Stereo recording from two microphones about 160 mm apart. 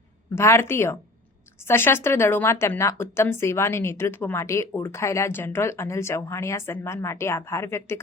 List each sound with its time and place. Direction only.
0.3 s a woman's voice: 15° left (ahead or behind)